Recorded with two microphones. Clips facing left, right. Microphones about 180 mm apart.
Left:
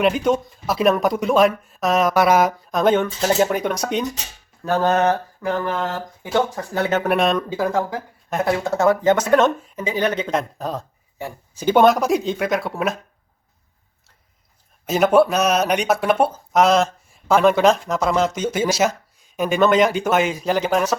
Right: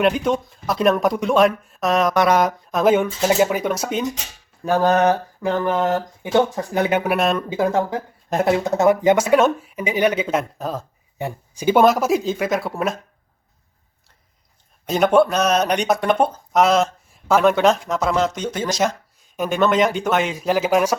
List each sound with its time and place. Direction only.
0.0 s speech: centre (ahead or behind)
2.8 s speech: 10° right (ahead or behind)
7.5 s speech: 20° right (ahead or behind); by 10.8 s centre (ahead or behind)
11.2 s speech: 20° right (ahead or behind)
11.6 s speech: 5° right (ahead or behind)
14.8 s speech: 5° left (ahead or behind)